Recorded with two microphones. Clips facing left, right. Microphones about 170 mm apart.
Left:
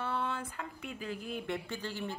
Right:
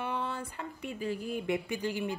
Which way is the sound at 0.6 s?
5° right (ahead or behind).